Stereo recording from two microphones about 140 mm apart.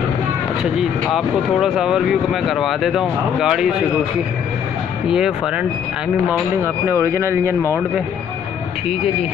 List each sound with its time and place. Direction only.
0.7 s speech: centre (ahead or behind)
5.0 s speech: 5° right (ahead or behind)
7.1 s speech: 20° right (ahead or behind)